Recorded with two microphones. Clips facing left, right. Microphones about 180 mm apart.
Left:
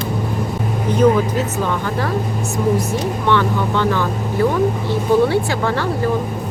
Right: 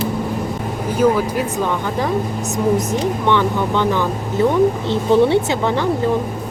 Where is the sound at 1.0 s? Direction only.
5° right (ahead or behind).